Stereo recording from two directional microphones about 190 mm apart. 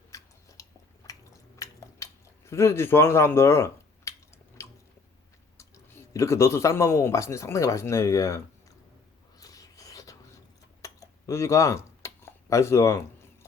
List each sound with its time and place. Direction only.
0.1 s chewing: 15° left (ahead or behind)
1.5 s a sound: 15° left (ahead or behind)
4.6 s biting: 15° left (ahead or behind)
5.5 s speech: 15° left (ahead or behind)
9.4 s whispering: 20° left (ahead or behind)
10.8 s a sound: 15° left (ahead or behind)